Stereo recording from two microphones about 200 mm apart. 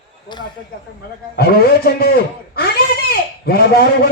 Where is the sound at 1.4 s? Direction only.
50° left (ahead or behind).